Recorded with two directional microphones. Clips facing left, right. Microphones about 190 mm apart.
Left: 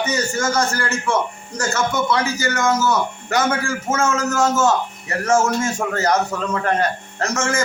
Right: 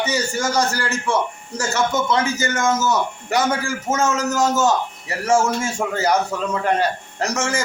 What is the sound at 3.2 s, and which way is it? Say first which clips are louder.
A man's voice: even; 15° right (ahead or behind).